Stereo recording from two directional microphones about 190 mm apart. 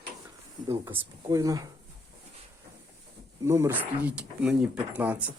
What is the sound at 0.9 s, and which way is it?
Speech, 15° right (ahead or behind).